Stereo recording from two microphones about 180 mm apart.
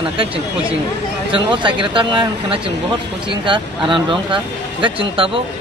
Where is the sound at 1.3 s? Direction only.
25° right (ahead or behind).